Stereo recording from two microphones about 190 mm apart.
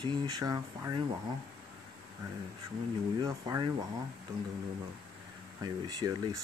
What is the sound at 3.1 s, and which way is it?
Speech, 20° right (ahead or behind).